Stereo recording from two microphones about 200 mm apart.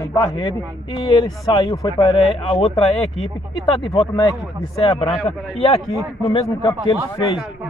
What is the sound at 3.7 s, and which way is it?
A man's voice, 25° left (ahead or behind).